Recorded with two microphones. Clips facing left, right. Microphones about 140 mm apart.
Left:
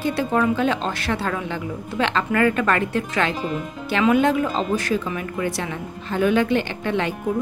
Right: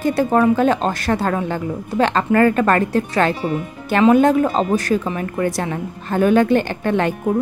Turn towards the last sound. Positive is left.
turn(degrees=-50)  # may be behind; listen again after turning